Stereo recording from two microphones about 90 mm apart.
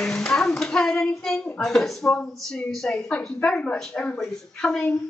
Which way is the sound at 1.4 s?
5° left (ahead or behind).